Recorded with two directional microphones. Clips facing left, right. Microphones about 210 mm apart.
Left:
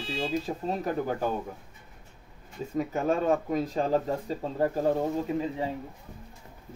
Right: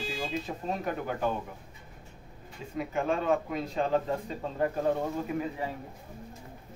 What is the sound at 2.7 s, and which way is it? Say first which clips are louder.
Speech: left 3 dB; 40° left (ahead or behind).